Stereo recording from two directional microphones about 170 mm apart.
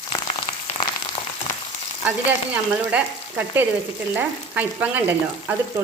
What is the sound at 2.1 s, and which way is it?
A woman's voice, 10° right (ahead or behind).